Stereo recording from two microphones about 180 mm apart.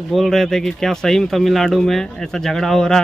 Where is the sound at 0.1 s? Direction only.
Centre (ahead or behind).